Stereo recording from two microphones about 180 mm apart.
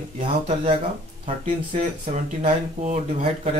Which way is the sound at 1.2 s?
40° right (ahead or behind).